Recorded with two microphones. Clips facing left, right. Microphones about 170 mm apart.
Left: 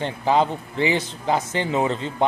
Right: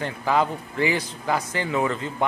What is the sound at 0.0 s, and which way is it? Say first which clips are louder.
Speech: left 3 dB; 25° left (ahead or behind).